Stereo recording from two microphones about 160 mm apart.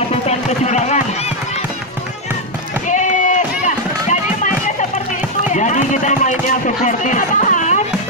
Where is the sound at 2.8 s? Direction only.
50° left (ahead or behind).